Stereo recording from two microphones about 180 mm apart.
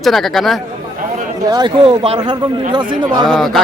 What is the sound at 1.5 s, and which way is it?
A man's voice, 25° right (ahead or behind).